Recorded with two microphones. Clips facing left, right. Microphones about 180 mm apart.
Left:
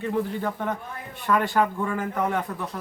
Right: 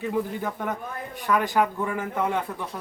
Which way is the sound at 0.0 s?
5° right (ahead or behind).